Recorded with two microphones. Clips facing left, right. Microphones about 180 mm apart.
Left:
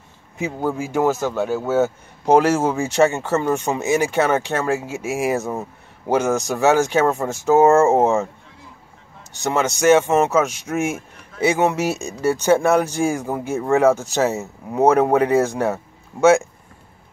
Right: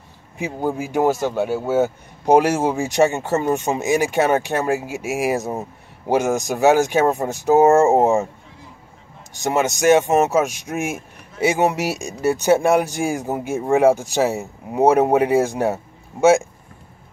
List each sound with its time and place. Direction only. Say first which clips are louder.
0.4 s a man's voice: even; 15° right (ahead or behind)
9.3 s a man's voice: right 1 dB; 15° right (ahead or behind)